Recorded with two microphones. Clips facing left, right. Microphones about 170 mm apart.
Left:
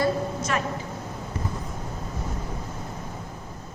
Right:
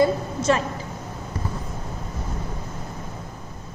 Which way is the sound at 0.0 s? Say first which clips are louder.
Right 4 dB; 30° right (ahead or behind).